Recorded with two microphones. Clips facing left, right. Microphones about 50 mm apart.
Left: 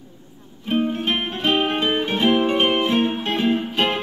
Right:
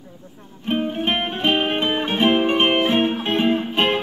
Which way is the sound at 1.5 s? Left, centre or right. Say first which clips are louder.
Left 1 dB; centre.